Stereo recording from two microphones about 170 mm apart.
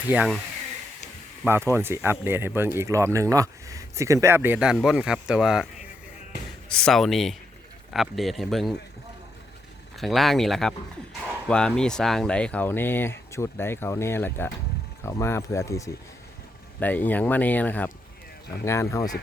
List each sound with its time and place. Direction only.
0.1 s speech: 5° right (ahead or behind)
1.7 s speech: 15° right (ahead or behind)
6.7 s speech: 5° left (ahead or behind)
10.0 s speech: centre (ahead or behind); by 19.0 s 15° left (ahead or behind)